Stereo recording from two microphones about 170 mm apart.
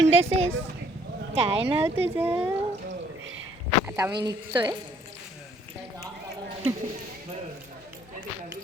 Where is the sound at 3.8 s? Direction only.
15° right (ahead or behind).